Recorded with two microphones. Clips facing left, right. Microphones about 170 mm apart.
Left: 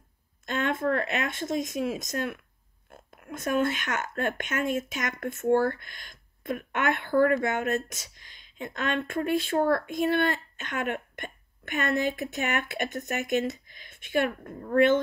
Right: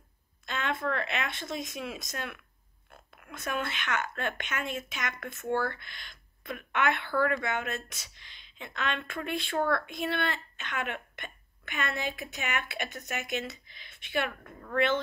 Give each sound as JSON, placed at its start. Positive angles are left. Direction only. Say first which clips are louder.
{"t": 0.5, "sound": "speech", "louder": "left 5 dB", "side_deg": 50}